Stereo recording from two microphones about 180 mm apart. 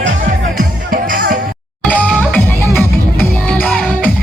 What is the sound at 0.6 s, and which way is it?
Music, 50° right (ahead or behind).